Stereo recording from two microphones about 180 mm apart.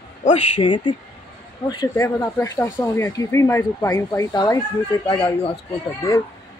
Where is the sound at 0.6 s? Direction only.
25° left (ahead or behind).